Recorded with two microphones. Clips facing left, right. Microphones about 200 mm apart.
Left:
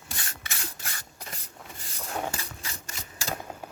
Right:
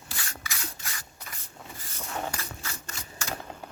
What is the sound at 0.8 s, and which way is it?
Spray, 30° left (ahead or behind).